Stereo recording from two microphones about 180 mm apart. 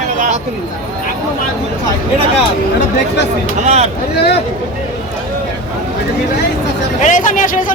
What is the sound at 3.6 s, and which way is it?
Speech, 40° right (ahead or behind).